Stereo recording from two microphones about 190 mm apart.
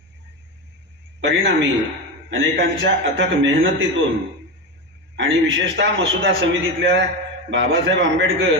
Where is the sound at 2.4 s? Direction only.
75° right (ahead or behind).